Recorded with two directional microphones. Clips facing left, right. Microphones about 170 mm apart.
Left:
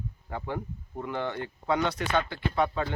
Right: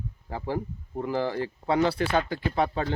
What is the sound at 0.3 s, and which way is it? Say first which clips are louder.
Speech: right 4 dB; 30° right (ahead or behind).